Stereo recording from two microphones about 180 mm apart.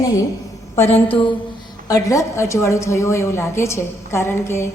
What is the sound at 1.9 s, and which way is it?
A woman's voice, 20° left (ahead or behind).